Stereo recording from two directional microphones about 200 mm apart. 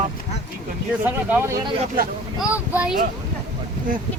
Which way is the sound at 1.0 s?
10° right (ahead or behind).